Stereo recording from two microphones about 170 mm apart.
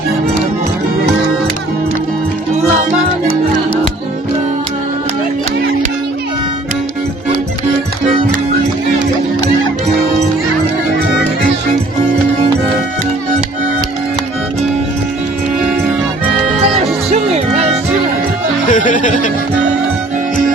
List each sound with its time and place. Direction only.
17.1 s music: 40° right (ahead or behind)
18.7 s music: 50° left (ahead or behind)